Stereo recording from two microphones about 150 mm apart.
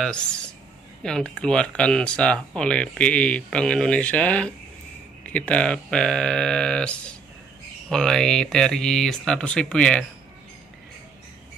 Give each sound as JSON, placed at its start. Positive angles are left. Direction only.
{"t": 0.0, "sound": "speech", "side_deg": 5}